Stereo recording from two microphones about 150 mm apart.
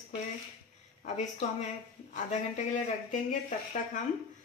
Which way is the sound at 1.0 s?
50° left (ahead or behind).